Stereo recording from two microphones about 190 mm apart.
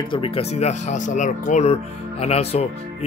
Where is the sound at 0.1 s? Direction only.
30° left (ahead or behind).